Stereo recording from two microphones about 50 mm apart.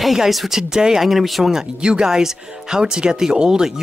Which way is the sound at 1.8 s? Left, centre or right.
Centre.